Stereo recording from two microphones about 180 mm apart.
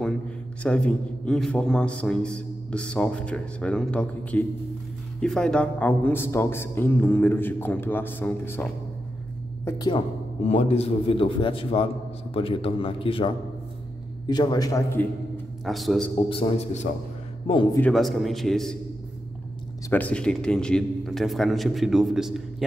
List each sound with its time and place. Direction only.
0.7 s a man's voice: 5° left (ahead or behind)
9.7 s a man's voice: 25° left (ahead or behind)
15.6 s a man's voice: centre (ahead or behind)
16.3 s a man's voice: 30° left (ahead or behind)
17.7 s a man's voice: 5° left (ahead or behind)
19.9 s a man's voice: 10° left (ahead or behind)